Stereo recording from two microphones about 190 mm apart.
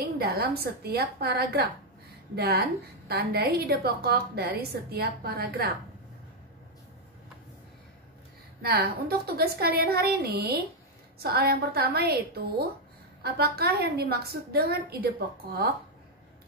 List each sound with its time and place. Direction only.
0.0 s a woman's voice: 55° right (ahead or behind)
8.6 s a woman's voice: 55° right (ahead or behind)